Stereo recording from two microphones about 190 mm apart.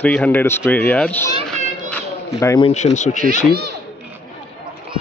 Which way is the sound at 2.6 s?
40° left (ahead or behind).